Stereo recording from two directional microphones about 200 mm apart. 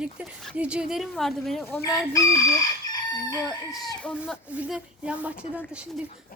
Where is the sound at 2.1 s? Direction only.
15° left (ahead or behind).